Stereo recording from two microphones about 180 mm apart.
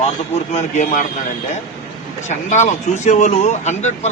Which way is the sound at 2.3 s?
40° left (ahead or behind).